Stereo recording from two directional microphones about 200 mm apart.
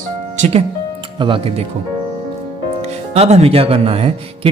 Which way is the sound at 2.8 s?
30° right (ahead or behind).